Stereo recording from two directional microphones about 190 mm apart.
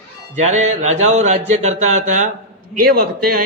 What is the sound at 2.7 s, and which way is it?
Speech, 50° right (ahead or behind).